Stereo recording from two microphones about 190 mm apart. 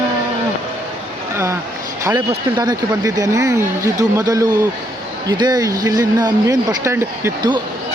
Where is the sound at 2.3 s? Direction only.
20° right (ahead or behind).